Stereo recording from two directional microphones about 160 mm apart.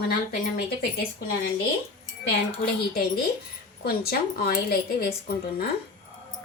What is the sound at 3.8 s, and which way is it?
A woman's voice, 75° left (ahead or behind).